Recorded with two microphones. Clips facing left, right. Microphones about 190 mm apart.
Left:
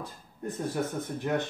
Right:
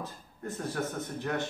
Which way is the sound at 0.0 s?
15° left (ahead or behind).